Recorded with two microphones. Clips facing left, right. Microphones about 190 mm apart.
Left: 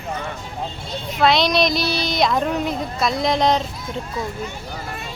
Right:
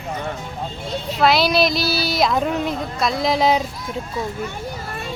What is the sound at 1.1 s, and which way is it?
Speech, 5° right (ahead or behind).